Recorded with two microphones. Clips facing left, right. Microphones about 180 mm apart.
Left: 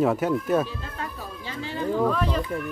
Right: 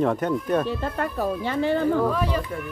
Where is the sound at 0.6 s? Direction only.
60° right (ahead or behind).